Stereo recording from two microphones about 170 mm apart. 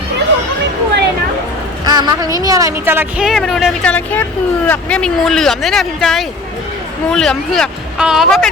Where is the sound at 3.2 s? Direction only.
Centre (ahead or behind).